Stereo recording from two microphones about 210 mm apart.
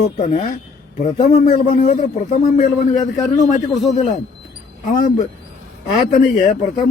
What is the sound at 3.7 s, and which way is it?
Speech, centre (ahead or behind).